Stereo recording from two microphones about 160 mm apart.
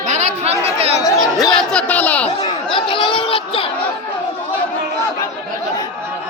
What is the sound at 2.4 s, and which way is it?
Chatter, 30° left (ahead or behind).